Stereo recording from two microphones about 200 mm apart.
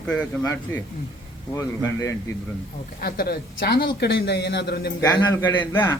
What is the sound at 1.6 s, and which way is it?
Speech, 15° left (ahead or behind).